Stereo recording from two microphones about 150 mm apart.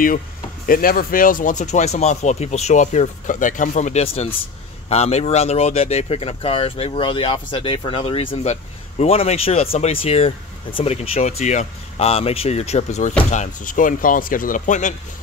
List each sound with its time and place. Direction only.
0.7 s speech: 70° left (ahead or behind); by 15.0 s 55° left (ahead or behind)